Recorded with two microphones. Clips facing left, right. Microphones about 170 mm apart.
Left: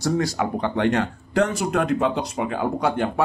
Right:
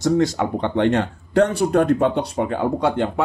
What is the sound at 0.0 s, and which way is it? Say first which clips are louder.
Speech: right 4 dB; 25° right (ahead or behind).